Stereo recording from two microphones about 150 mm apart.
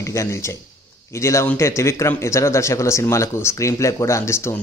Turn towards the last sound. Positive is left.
turn(degrees=20)  # may be behind; listen again after turning